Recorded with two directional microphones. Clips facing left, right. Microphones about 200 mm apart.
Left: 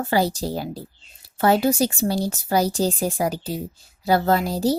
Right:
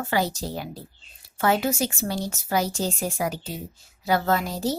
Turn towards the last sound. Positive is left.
turn(degrees=35)  # may be behind; listen again after turning